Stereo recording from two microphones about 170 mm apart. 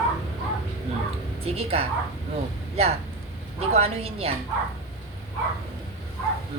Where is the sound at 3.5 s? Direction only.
40° right (ahead or behind).